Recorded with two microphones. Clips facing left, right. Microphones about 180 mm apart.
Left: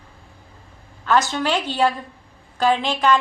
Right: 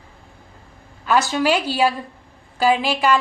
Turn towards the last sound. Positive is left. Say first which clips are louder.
# right 1 dB
turn(degrees=-10)  # may be behind; listen again after turning